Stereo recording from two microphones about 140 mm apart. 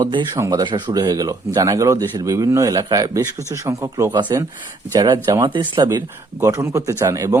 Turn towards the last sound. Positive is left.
turn(degrees=-25)  # may be behind; listen again after turning